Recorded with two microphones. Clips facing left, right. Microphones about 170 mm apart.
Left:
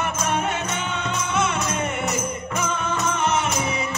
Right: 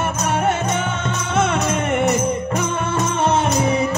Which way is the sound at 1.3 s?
55° right (ahead or behind).